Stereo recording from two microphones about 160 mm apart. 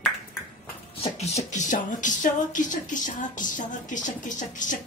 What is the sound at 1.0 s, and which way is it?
Speech, 45° left (ahead or behind).